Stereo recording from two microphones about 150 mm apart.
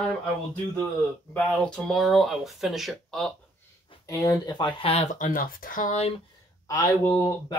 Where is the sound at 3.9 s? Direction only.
35° left (ahead or behind).